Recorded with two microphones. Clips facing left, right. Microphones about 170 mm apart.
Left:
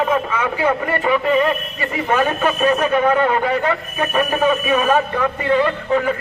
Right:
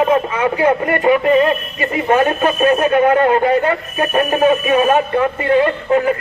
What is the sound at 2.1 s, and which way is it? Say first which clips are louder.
A man's voice: right 4 dB; 30° right (ahead or behind).